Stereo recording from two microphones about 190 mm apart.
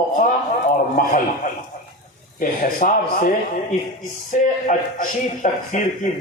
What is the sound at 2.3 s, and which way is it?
Speech, 50° left (ahead or behind).